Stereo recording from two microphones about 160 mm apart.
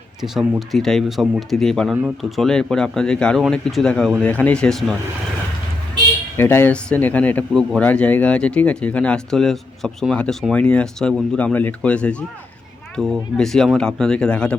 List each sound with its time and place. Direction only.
0.7 s speech: centre (ahead or behind)
6.3 s speech: 15° left (ahead or behind)